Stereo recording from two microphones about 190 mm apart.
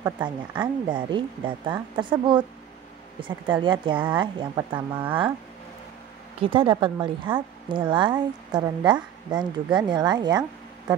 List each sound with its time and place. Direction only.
0.0 s a woman's voice: 25° right (ahead or behind)
6.4 s a woman's voice: 25° right (ahead or behind)